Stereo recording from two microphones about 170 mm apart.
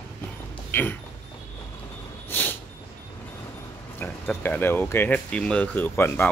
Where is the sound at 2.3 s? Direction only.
10° left (ahead or behind).